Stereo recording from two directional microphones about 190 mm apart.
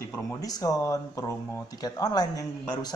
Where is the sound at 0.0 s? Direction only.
15° left (ahead or behind).